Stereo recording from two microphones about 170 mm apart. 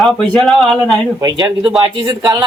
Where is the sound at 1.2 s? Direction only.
25° right (ahead or behind).